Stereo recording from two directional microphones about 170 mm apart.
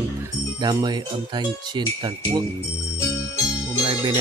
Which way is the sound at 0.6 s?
25° right (ahead or behind).